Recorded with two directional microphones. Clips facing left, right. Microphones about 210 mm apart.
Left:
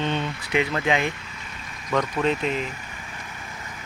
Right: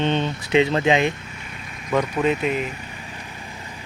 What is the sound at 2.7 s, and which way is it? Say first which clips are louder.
Vehicle: right 3 dB; 35° right (ahead or behind).